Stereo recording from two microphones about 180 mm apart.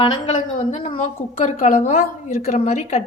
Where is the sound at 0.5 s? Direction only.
40° left (ahead or behind).